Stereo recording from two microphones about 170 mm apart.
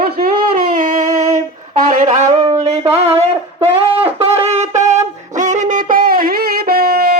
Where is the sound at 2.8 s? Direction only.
40° right (ahead or behind).